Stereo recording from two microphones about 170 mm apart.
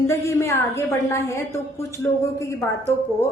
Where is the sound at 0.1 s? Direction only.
15° left (ahead or behind).